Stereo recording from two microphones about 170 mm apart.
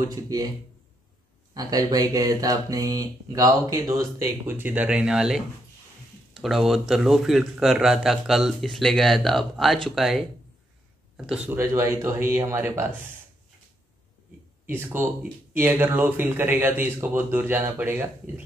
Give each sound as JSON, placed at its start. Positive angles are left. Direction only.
{"t": 0.1, "sound": "speech", "side_deg": -20}
{"t": 1.5, "sound": "speech", "side_deg": -20}
{"t": 14.7, "sound": "speech", "side_deg": -15}